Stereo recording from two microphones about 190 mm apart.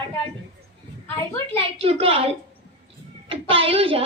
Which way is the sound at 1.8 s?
30° right (ahead or behind).